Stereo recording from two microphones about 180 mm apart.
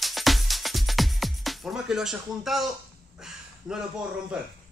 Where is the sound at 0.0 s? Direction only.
Centre (ahead or behind).